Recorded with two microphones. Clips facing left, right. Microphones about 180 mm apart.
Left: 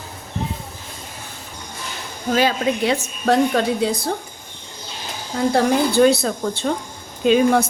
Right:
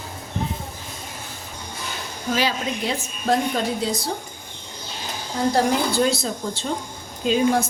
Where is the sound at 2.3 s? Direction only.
60° left (ahead or behind).